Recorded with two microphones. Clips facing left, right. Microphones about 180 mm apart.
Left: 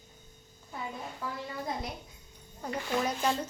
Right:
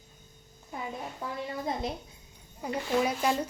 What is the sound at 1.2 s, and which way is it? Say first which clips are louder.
Speech: right 1 dB; 25° right (ahead or behind).